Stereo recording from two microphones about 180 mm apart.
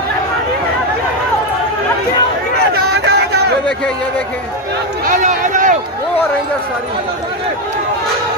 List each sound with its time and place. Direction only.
2.7 s chatter: 70° right (ahead or behind)
5.0 s run: 45° right (ahead or behind)